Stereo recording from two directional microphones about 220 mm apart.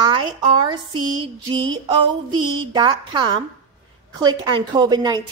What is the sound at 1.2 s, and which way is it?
A woman's voice, 20° right (ahead or behind).